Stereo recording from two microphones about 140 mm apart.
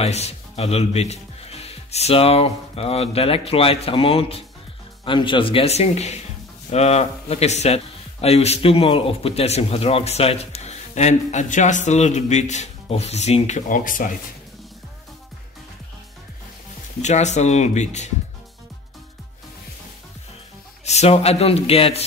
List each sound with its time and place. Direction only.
0.0 s a man's voice: 50° left (ahead or behind); by 14.0 s 75° left (ahead or behind)
17.0 s speech: 55° left (ahead or behind)
20.8 s speech: 50° left (ahead or behind)